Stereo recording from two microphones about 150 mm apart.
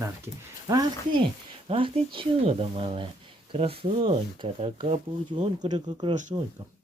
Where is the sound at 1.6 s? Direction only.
35° right (ahead or behind).